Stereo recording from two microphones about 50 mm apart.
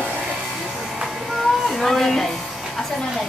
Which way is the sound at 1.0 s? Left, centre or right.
Centre.